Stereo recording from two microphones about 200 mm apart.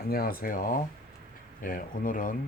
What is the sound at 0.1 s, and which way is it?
Speech, 45° left (ahead or behind).